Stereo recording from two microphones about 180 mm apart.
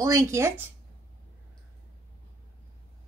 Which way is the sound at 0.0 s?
20° right (ahead or behind).